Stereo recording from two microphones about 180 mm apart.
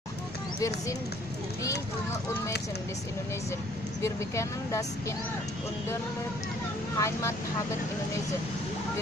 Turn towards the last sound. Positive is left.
turn(degrees=15)  # may be behind; listen again after turning